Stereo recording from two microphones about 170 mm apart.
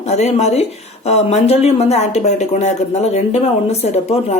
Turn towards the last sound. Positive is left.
turn(degrees=40)  # may be behind; listen again after turning